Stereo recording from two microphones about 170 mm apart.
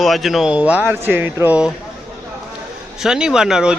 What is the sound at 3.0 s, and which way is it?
Speech, 5° right (ahead or behind).